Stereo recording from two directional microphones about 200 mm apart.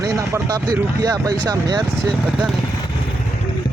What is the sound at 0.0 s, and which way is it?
Speech, 15° right (ahead or behind).